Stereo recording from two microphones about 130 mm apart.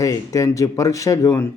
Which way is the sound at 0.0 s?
25° left (ahead or behind).